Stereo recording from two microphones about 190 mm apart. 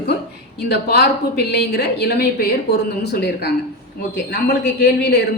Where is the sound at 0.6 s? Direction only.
60° left (ahead or behind).